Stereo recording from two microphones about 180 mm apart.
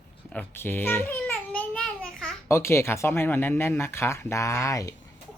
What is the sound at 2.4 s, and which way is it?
Speech, 15° left (ahead or behind).